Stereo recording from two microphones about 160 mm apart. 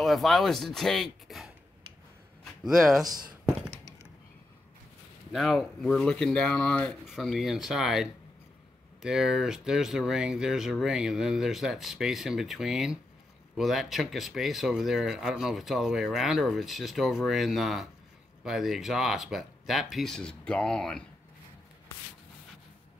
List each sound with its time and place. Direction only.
0.0 s speech: centre (ahead or behind)
2.6 s speech: centre (ahead or behind)
3.1 s a sound: 25° right (ahead or behind)
5.3 s speech: centre (ahead or behind)